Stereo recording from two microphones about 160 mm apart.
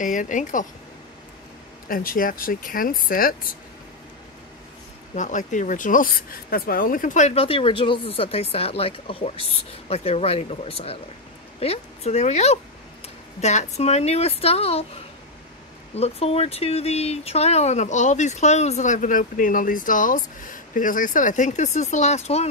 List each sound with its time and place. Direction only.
0.0 s speech: 55° left (ahead or behind)
1.9 s speech: 60° left (ahead or behind)
5.1 s speech: 50° left (ahead or behind)
15.9 s speech: 40° left (ahead or behind)